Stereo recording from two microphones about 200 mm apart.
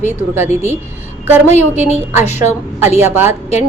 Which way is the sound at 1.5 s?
35° left (ahead or behind).